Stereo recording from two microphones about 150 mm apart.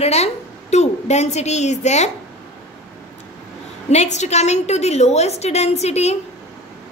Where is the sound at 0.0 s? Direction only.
45° left (ahead or behind).